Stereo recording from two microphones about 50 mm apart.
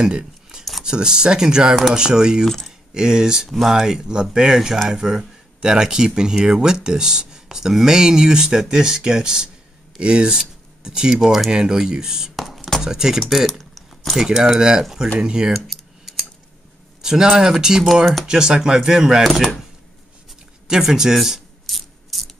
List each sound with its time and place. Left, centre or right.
0.0 s scissors: centre
0.8 s speech: centre
2.4 s speech: centre
2.9 s speech: centre
12.4 s chopping: centre
12.8 s speech: centre
15.5 s typing: centre
17.0 s speech: centre
19.2 s speech: centre
20.6 s a sound: centre